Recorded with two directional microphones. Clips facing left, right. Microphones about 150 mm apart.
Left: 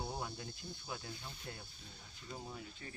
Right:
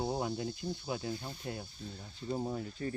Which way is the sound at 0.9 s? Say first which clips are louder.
Right 8 dB; 20° right (ahead or behind).